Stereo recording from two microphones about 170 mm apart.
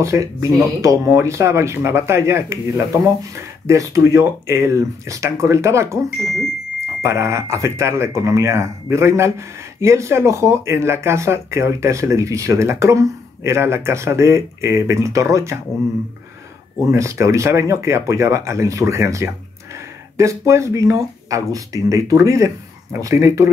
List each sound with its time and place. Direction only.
0.0 s speech: 20° right (ahead or behind)
7.0 s speech: 15° right (ahead or behind)
16.9 s speech: 15° right (ahead or behind)